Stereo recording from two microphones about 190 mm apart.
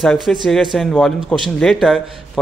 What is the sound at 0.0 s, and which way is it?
A man's voice, centre (ahead or behind).